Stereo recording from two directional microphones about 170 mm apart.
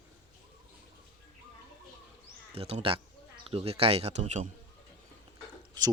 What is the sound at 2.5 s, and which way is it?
Speech, 35° right (ahead or behind).